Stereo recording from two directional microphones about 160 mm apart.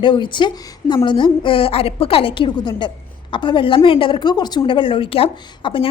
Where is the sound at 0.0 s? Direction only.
30° left (ahead or behind).